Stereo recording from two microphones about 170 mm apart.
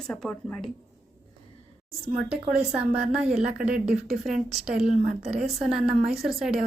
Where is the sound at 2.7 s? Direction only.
5° right (ahead or behind).